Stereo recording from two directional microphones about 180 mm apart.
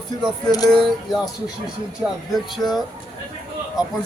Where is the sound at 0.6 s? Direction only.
Centre (ahead or behind).